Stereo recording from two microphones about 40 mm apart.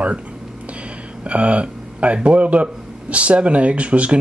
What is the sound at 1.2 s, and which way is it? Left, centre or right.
Speech, right.